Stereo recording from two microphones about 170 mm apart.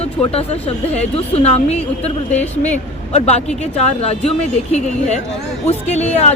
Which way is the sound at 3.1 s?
40° left (ahead or behind).